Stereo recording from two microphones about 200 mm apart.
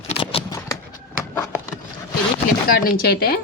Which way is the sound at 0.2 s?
30° left (ahead or behind).